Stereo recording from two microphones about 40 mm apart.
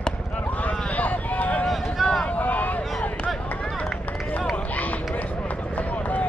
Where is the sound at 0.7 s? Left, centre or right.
Left.